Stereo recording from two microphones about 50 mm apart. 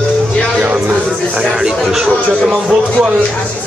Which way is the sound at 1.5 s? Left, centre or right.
Centre.